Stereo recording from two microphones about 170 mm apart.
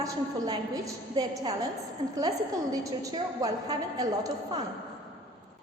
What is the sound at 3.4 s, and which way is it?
Speech, 20° right (ahead or behind).